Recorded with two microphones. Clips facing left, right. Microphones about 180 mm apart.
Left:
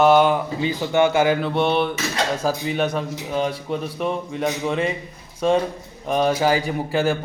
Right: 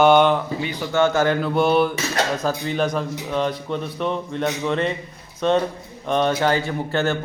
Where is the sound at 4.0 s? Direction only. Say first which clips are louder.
Right 1 dB; 5° left (ahead or behind).